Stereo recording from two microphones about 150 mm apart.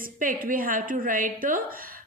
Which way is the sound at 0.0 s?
65° right (ahead or behind).